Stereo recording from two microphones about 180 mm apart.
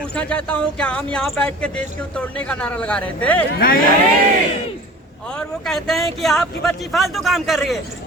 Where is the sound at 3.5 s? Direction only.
60° left (ahead or behind).